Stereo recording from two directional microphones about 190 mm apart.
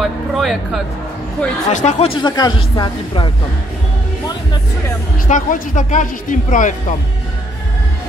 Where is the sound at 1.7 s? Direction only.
40° left (ahead or behind); by 3.2 s 20° left (ahead or behind).